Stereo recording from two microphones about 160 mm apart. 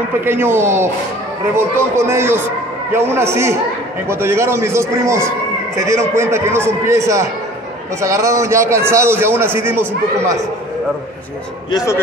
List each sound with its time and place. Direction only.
0.2 s a man's voice: 15° right (ahead or behind)
11.7 s a man's voice: 20° left (ahead or behind)